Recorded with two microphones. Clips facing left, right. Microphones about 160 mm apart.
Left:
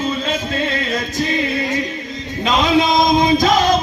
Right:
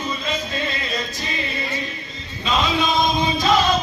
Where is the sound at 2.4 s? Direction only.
80° left.